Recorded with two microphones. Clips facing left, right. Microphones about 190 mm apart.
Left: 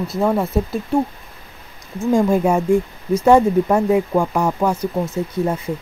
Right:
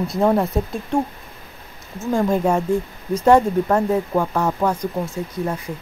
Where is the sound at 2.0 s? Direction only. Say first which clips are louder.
Left 3 dB; 15° left (ahead or behind).